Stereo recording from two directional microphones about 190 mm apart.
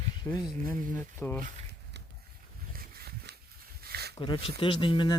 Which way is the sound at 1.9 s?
65° right (ahead or behind).